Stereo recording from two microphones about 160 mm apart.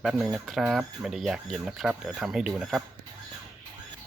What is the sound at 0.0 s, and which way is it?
Speech, centre (ahead or behind).